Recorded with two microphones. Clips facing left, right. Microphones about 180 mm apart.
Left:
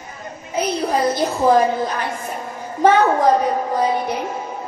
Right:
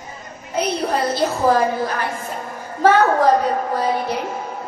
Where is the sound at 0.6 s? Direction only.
20° left (ahead or behind).